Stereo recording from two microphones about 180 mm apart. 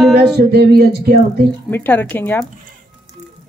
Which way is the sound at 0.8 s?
60° right (ahead or behind).